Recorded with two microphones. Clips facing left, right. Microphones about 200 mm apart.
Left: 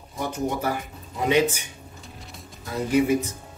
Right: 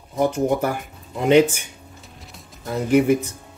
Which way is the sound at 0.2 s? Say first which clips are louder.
Right 7 dB; 55° right (ahead or behind).